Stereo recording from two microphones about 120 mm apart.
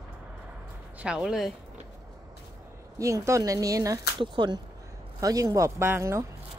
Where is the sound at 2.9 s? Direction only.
25° right (ahead or behind).